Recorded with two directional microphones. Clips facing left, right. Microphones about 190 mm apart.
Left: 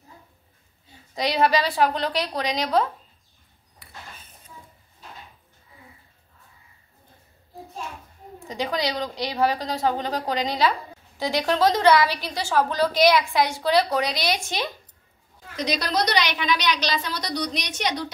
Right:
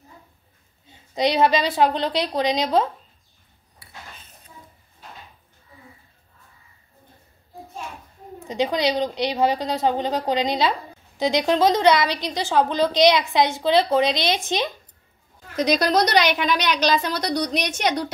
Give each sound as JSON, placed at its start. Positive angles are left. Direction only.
{"t": 0.8, "sound": "a woman's voice", "side_deg": -20}
{"t": 8.5, "sound": "a woman's voice", "side_deg": -20}
{"t": 15.5, "sound": "a woman's voice", "side_deg": -50}